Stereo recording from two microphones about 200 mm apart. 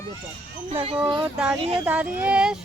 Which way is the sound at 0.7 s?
30° right (ahead or behind).